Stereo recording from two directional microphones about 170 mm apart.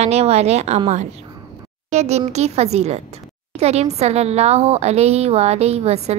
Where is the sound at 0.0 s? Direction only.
40° right (ahead or behind).